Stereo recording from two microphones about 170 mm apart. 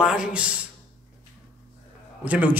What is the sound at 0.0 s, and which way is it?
Speech, 5° right (ahead or behind).